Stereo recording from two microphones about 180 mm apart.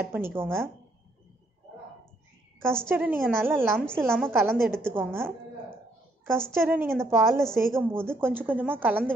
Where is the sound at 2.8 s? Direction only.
10° right (ahead or behind).